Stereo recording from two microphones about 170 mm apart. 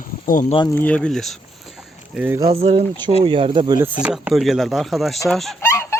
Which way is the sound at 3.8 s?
10° right (ahead or behind).